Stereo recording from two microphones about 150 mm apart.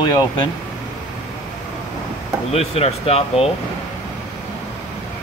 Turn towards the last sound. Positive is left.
turn(degrees=40)  # may be behind; listen again after turning